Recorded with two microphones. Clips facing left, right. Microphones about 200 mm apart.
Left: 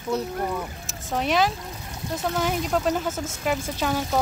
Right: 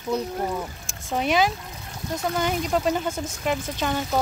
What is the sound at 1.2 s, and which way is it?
Speech, centre (ahead or behind).